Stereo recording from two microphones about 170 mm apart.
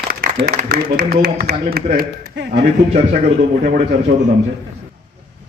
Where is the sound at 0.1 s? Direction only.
65° right (ahead or behind); by 2.6 s 85° right.